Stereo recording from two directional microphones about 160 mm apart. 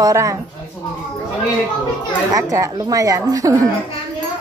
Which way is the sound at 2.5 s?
20° right (ahead or behind).